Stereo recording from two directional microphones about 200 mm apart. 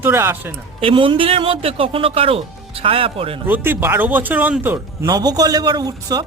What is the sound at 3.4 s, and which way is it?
A man's voice, 10° right (ahead or behind).